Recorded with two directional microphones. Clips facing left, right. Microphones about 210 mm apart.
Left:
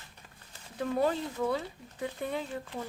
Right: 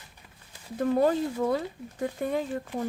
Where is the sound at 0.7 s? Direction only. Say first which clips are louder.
Right 6 dB; 45° right (ahead or behind).